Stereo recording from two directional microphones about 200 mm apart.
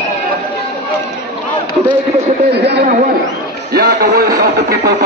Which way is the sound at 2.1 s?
30° right (ahead or behind).